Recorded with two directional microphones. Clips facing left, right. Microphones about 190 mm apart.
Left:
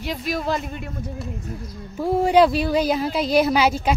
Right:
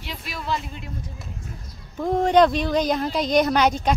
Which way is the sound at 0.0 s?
45° left (ahead or behind).